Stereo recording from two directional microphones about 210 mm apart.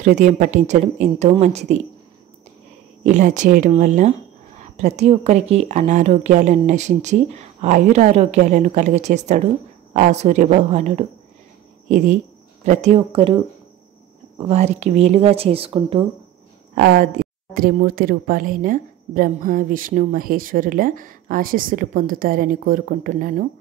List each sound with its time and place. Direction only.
0.0 s speech: 35° right (ahead or behind)
3.0 s speech: 35° right (ahead or behind)
12.6 s speech: 35° right (ahead or behind)
14.5 s speech: 30° right (ahead or behind)
16.7 s speech: 50° right (ahead or behind)